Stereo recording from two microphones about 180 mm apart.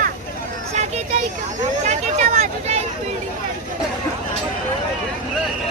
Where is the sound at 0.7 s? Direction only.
40° right (ahead or behind).